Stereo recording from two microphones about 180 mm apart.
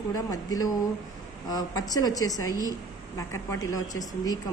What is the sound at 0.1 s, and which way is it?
A woman's voice, 20° left (ahead or behind).